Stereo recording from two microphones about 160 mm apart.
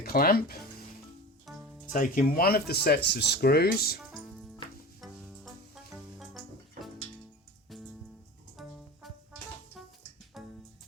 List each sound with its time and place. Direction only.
0.0 s speech: 70° left (ahead or behind)
1.9 s speech: 60° left (ahead or behind)
4.1 s music: centre (ahead or behind)
5.7 s music: centre (ahead or behind)
8.6 s music: centre (ahead or behind)
10.4 s music: centre (ahead or behind)